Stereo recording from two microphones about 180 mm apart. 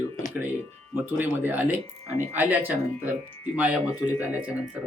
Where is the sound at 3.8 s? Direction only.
15° left (ahead or behind).